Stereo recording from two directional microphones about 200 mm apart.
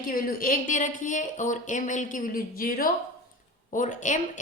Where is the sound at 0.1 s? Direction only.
45° left (ahead or behind).